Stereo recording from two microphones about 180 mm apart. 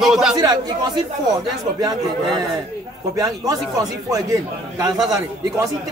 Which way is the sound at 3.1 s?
20° right (ahead or behind).